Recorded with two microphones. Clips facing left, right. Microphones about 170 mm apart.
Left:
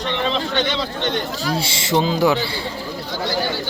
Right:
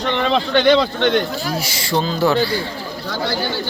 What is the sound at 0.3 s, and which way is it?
Speech, 65° right (ahead or behind).